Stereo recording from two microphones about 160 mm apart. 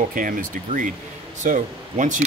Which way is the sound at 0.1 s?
60° right (ahead or behind).